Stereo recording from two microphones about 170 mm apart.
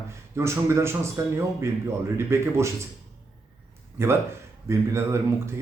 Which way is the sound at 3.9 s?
15° right (ahead or behind).